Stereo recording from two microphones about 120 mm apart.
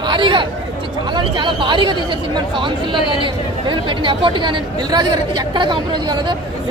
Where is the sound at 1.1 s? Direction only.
40° right (ahead or behind).